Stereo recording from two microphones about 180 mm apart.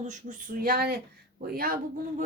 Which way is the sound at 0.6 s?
55° right (ahead or behind).